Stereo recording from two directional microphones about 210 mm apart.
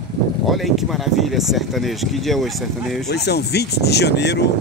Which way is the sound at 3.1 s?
50° left (ahead or behind).